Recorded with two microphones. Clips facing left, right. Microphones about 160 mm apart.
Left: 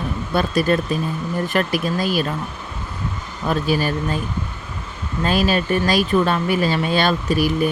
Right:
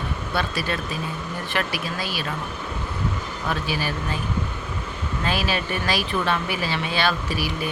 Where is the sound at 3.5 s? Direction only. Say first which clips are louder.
Left 8 dB; 45° left (ahead or behind).